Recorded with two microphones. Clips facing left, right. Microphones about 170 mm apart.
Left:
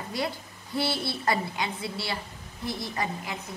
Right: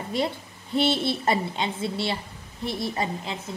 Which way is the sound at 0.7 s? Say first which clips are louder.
Right 6 dB; 25° right (ahead or behind).